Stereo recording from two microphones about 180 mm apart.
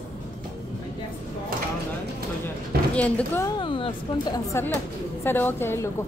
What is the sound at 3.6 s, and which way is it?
Speech, 30° left (ahead or behind).